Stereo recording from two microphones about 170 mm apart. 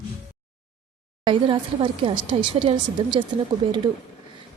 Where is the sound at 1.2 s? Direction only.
30° right (ahead or behind).